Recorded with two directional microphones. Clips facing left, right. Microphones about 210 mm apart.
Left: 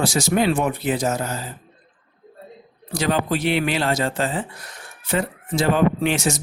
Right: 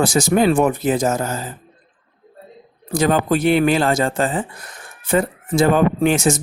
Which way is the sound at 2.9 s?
50° right (ahead or behind).